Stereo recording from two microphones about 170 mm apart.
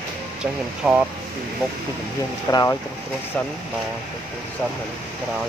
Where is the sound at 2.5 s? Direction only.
15° left (ahead or behind).